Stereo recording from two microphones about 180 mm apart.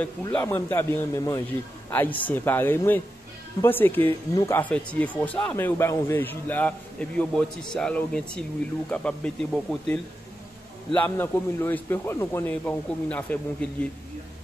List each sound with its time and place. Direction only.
0.3 s speech: 10° left (ahead or behind)